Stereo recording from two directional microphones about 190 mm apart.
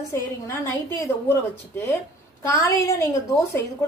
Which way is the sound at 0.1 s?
15° left (ahead or behind).